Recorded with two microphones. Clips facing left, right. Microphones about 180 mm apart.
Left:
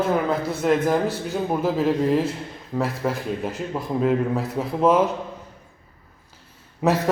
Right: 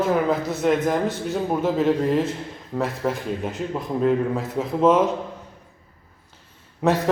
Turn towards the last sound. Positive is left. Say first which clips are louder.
# even
turn(degrees=5)  # may be behind; listen again after turning